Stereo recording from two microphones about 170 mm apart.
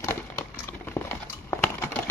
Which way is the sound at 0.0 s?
15° left (ahead or behind).